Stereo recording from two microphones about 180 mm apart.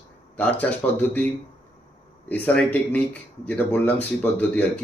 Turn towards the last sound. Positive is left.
turn(degrees=5)  # may be behind; listen again after turning